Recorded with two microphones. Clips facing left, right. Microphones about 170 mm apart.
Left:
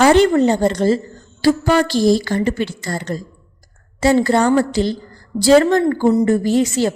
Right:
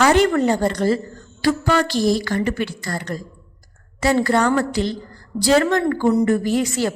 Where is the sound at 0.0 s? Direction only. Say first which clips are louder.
Left 4 dB; 30° left (ahead or behind).